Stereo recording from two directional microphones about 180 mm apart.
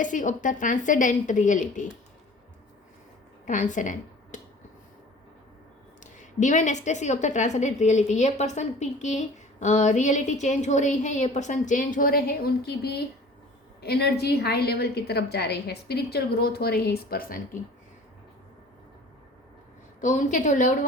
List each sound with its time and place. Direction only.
0.0 s a woman's voice: 45° left (ahead or behind)
3.4 s speech: 45° left (ahead or behind)
6.0 s a woman's voice: 45° left (ahead or behind)
20.0 s a woman's voice: 45° left (ahead or behind)